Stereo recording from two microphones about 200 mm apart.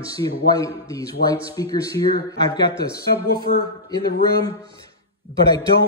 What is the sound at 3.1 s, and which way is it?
Speech, 60° left (ahead or behind).